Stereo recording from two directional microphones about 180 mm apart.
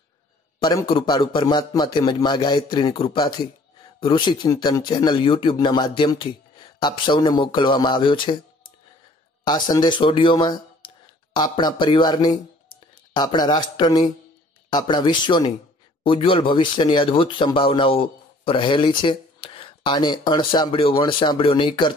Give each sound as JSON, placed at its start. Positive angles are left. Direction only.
{"t": 0.6, "sound": "speech", "side_deg": 25}
{"t": 9.4, "sound": "speech", "side_deg": 25}